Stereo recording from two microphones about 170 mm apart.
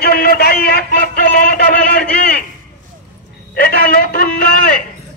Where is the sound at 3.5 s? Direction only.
60° left (ahead or behind).